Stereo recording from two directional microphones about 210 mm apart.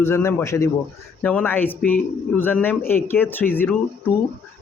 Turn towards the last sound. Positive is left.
turn(degrees=10)  # may be behind; listen again after turning